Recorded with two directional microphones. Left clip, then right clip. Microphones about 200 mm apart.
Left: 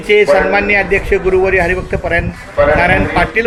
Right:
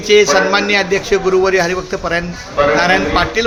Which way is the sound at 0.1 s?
15° right (ahead or behind).